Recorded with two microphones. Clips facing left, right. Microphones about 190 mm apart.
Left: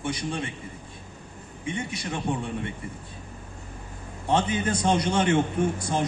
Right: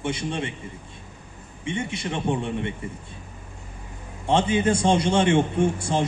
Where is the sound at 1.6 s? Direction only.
25° right (ahead or behind).